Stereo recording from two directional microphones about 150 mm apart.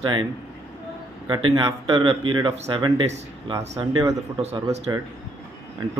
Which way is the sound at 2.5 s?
45° right (ahead or behind).